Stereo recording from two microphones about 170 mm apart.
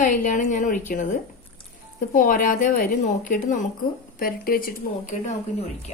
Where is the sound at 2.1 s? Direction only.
50° left (ahead or behind).